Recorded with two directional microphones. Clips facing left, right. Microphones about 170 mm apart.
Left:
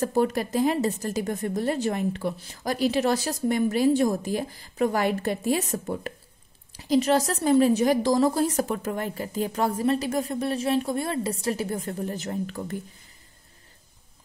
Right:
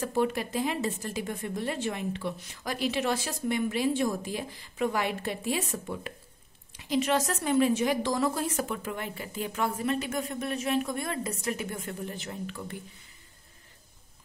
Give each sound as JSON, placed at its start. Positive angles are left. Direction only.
{"t": 0.0, "sound": "a woman's voice", "side_deg": 40}